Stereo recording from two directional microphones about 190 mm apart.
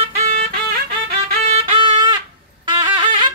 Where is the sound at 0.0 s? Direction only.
30° right (ahead or behind).